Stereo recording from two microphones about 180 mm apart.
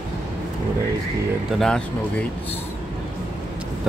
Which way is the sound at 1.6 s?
5° left (ahead or behind).